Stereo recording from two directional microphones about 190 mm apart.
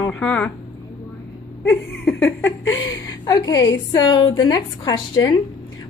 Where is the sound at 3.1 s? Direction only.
20° left (ahead or behind).